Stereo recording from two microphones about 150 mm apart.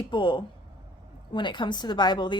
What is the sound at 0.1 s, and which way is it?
A woman's voice, 30° left (ahead or behind).